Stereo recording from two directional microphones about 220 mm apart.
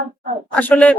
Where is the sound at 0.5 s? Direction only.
5° left (ahead or behind).